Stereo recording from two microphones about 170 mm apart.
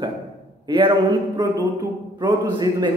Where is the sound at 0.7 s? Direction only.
25° right (ahead or behind).